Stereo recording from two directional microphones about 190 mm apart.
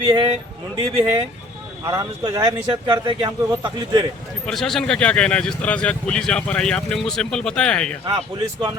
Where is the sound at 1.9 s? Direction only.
20° right (ahead or behind).